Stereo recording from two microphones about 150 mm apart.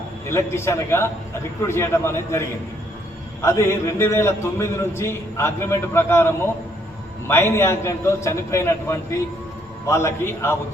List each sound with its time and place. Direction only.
0.3 s a man's voice: 15° left (ahead or behind)